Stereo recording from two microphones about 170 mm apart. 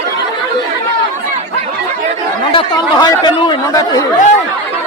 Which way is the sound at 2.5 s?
25° left (ahead or behind).